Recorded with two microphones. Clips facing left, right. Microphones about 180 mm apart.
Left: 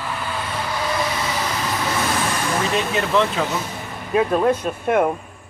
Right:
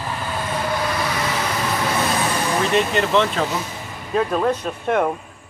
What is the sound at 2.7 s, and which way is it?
Speech, centre (ahead or behind).